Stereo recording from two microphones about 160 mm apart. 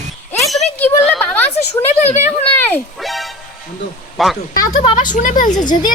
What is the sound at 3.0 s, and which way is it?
Music, centre (ahead or behind).